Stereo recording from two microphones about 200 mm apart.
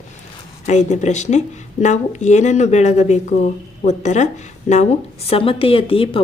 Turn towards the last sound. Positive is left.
turn(degrees=25)  # may be behind; listen again after turning